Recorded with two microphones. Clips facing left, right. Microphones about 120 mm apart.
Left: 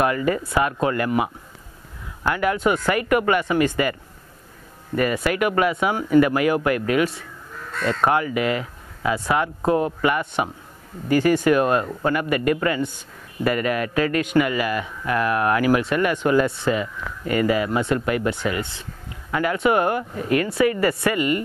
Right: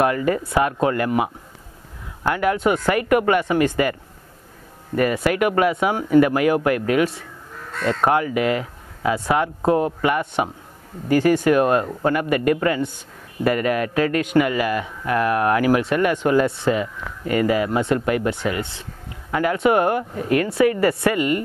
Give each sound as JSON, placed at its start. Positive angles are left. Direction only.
{"t": 0.0, "sound": "speech", "side_deg": -45}
{"t": 4.9, "sound": "speech", "side_deg": -45}